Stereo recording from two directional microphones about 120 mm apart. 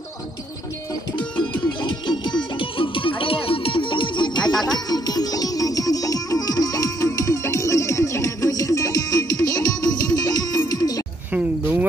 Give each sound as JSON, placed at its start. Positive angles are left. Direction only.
{"t": 2.8, "sound": "music", "side_deg": 45}
{"t": 4.4, "sound": "music", "side_deg": 5}
{"t": 4.8, "sound": "music", "side_deg": 35}
{"t": 11.3, "sound": "a sound", "side_deg": -15}